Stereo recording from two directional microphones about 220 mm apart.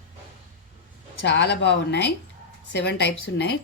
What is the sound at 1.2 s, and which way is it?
A woman's voice, 50° left (ahead or behind).